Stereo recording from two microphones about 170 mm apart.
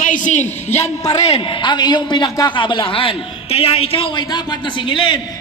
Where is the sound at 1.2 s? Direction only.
30° left (ahead or behind).